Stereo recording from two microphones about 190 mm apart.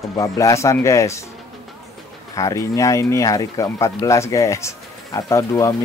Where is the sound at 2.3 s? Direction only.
15° left (ahead or behind).